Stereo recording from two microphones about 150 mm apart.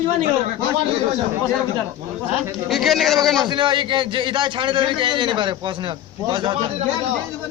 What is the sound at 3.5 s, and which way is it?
A man's voice, 30° right (ahead or behind).